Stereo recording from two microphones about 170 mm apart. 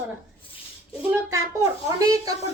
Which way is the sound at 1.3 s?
20° right (ahead or behind).